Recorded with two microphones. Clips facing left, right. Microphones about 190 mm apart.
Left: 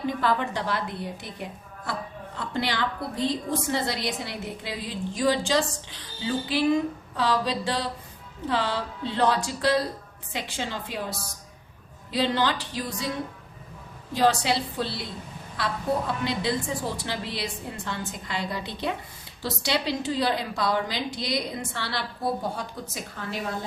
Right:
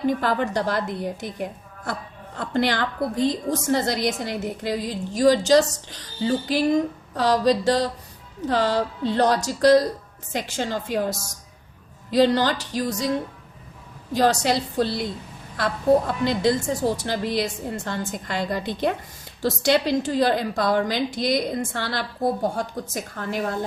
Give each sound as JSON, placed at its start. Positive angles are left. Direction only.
{"t": 0.0, "sound": "a woman's voice", "side_deg": -45}
{"t": 14.1, "sound": "a woman's voice", "side_deg": -45}